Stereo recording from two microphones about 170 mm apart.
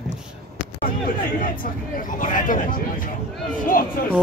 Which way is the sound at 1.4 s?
55° left (ahead or behind).